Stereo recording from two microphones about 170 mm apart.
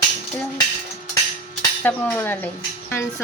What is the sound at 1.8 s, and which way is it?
Speech, 10° left (ahead or behind).